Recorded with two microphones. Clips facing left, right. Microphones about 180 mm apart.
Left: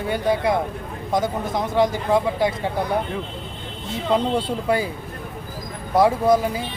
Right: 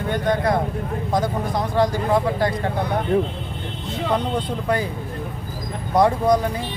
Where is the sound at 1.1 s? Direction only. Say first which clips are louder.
Left 1 dB; 20° left (ahead or behind).